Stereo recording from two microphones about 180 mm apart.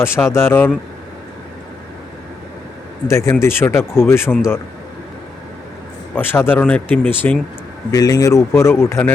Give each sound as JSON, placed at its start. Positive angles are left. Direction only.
{"t": 0.0, "sound": "speech", "side_deg": 15}
{"t": 3.1, "sound": "speech", "side_deg": 15}
{"t": 6.1, "sound": "speech", "side_deg": 10}